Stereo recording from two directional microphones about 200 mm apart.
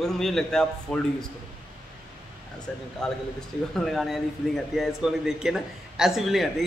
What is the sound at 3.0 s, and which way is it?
A man's voice, 5° left (ahead or behind).